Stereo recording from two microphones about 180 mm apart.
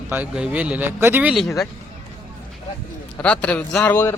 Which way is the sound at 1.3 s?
Centre (ahead or behind).